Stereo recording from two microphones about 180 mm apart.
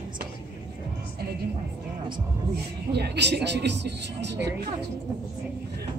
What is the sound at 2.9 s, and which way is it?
Speech, 65° right (ahead or behind).